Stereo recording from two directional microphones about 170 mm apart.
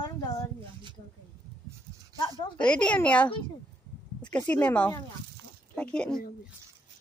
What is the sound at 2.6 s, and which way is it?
Speech, 5° left (ahead or behind).